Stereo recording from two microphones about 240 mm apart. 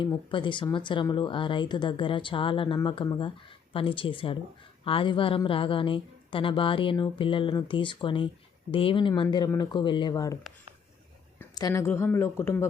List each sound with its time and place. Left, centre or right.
0.0 s speech: left
11.3 s a woman's voice: centre